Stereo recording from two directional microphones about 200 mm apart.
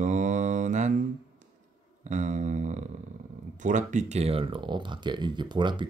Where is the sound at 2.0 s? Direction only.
35° right (ahead or behind).